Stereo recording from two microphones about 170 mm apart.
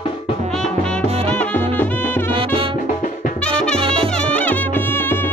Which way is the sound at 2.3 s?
30° right (ahead or behind).